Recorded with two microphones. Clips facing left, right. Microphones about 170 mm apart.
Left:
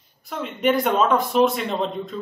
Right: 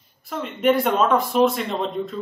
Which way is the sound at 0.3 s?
Centre (ahead or behind).